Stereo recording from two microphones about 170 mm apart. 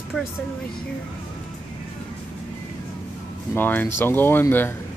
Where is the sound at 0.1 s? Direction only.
5° left (ahead or behind).